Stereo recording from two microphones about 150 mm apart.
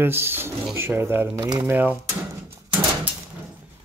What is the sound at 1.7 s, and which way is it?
Speech, 15° right (ahead or behind).